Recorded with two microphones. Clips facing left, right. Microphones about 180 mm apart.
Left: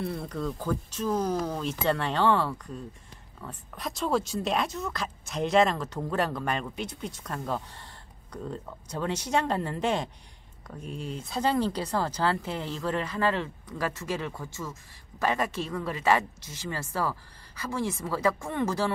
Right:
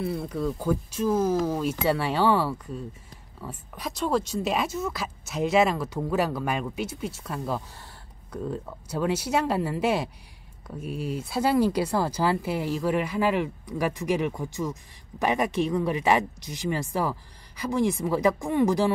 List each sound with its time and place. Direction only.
0.0 s speech: centre (ahead or behind)